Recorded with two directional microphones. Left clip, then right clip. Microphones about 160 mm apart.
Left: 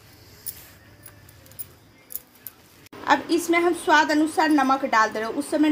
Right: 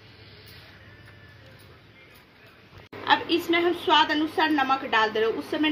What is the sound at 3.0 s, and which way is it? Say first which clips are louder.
A woman's voice: left 2 dB; 60° left (ahead or behind).